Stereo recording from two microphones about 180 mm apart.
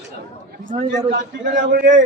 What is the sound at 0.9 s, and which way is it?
Speech, 75° right (ahead or behind).